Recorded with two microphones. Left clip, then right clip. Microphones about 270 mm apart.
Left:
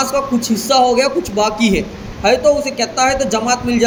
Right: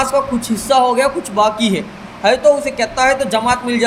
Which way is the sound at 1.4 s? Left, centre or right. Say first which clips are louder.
Right 2 dB; right.